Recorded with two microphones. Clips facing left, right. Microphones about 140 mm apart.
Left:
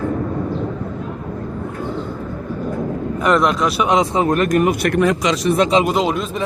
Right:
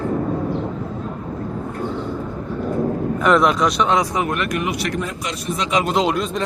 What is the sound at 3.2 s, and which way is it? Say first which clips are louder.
Speech: even; centre (ahead or behind).